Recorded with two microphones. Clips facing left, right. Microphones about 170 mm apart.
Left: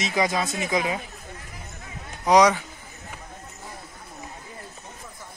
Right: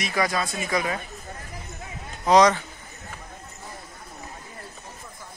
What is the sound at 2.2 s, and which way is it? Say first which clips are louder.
Speech: even; 10° left (ahead or behind).